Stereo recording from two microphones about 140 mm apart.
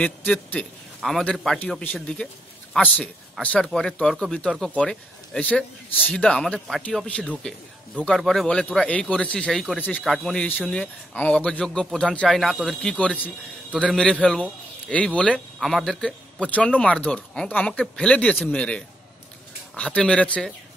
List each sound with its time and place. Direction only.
0.0 s a man's voice: 10° left (ahead or behind)